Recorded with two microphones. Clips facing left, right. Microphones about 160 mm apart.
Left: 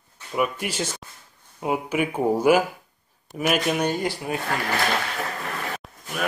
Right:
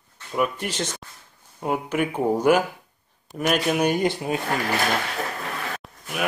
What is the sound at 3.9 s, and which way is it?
Speech, 20° right (ahead or behind).